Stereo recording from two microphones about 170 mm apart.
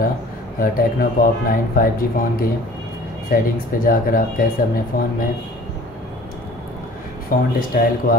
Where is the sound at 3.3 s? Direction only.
55° left (ahead or behind).